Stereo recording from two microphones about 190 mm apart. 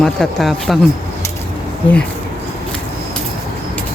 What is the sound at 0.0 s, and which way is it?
Speech, centre (ahead or behind).